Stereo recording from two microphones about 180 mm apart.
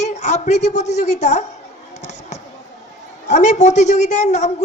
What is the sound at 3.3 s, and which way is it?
A man's voice, 40° left (ahead or behind).